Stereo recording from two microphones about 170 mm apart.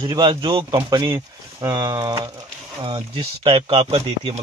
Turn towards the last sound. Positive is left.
turn(degrees=-35)  # may be behind; listen again after turning